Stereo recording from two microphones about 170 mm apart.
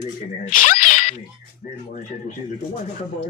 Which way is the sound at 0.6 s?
50° left (ahead or behind).